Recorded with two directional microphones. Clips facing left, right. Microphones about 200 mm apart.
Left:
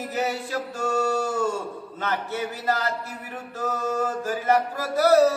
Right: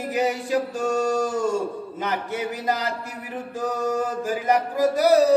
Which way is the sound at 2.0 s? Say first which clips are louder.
Right 1 dB; 15° right (ahead or behind).